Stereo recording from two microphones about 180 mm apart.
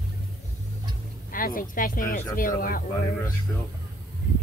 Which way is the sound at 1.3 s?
50° left (ahead or behind).